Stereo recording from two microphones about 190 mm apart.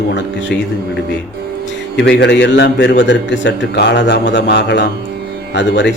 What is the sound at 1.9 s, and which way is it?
A man's voice, 65° left (ahead or behind).